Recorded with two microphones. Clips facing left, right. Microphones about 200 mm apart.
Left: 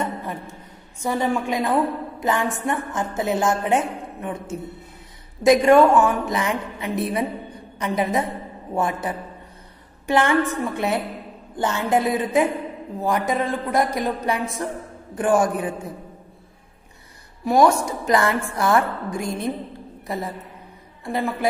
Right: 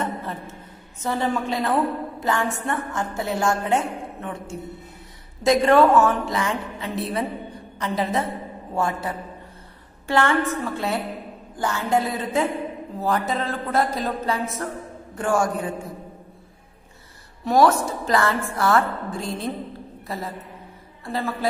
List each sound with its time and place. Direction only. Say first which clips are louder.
0.0 s a sound: left 1 dB; 15° left (ahead or behind)
1.0 s a woman's voice: left 2 dB; 15° left (ahead or behind)
17.5 s a woman's voice: left 1 dB; 10° left (ahead or behind)